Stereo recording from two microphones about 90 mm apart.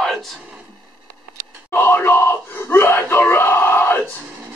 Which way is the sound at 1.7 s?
25° left (ahead or behind).